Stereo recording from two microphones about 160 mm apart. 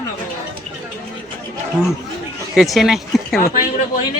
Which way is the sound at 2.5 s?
Centre (ahead or behind).